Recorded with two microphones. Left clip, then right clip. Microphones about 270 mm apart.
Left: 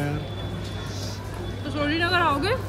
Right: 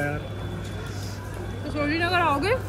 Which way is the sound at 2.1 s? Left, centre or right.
Centre.